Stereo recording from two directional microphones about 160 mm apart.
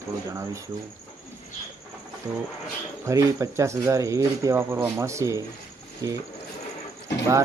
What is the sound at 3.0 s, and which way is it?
Speech, 20° right (ahead or behind).